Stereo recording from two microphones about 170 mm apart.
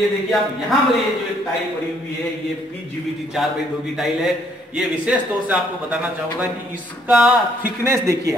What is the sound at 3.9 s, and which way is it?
A man's voice, centre (ahead or behind).